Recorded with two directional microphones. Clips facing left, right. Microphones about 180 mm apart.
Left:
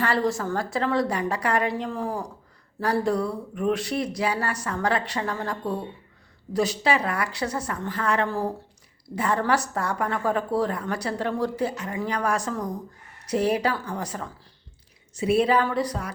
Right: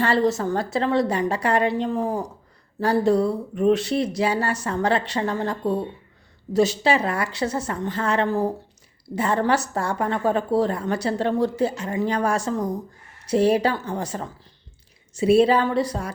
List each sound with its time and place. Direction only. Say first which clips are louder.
0.0 s a woman's voice: right 4 dB; 25° right (ahead or behind)